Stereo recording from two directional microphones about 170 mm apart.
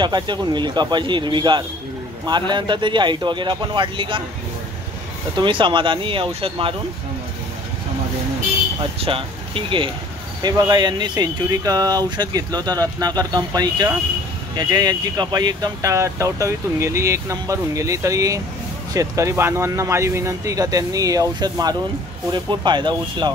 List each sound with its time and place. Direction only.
0.0 s speech: 25° right (ahead or behind)
5.3 s speech: 30° right (ahead or behind)
9.0 s speech: 30° right (ahead or behind)